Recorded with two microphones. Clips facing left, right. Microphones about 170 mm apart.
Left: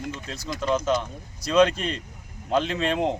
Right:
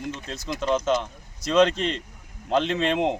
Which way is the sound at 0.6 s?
Centre (ahead or behind).